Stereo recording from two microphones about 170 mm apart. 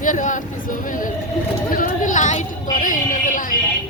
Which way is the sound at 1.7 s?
50° left (ahead or behind).